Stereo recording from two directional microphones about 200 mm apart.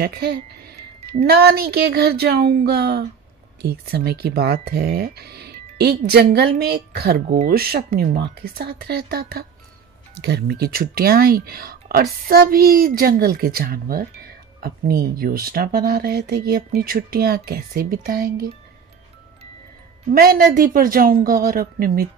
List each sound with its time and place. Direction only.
0.0 s speech: 50° right (ahead or behind)
20.1 s speech: 45° right (ahead or behind)